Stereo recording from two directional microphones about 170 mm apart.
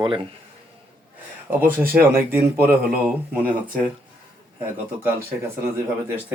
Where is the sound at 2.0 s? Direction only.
10° right (ahead or behind).